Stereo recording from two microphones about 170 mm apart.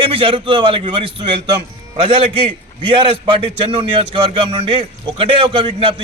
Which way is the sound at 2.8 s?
30° right (ahead or behind).